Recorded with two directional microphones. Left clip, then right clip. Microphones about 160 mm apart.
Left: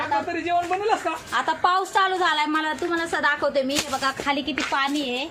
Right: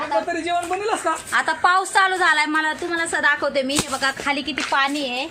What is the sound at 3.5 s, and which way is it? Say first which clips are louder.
A woman's voice: right 1 dB; 15° right (ahead or behind).